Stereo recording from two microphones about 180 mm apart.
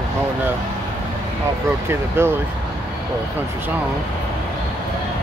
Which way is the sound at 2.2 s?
15° right (ahead or behind).